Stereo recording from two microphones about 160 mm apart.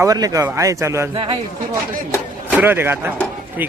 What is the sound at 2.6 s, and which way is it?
Speech, 15° right (ahead or behind).